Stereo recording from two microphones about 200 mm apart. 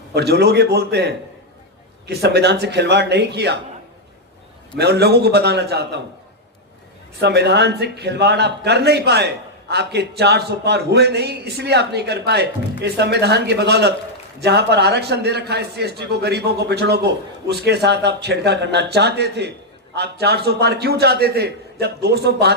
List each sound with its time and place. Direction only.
0.1 s a man's voice: 55° right (ahead or behind)
4.8 s a man's voice: 55° right (ahead or behind)
7.2 s a man's voice: 55° right (ahead or behind)